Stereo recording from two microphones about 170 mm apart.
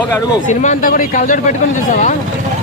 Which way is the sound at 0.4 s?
45° left (ahead or behind).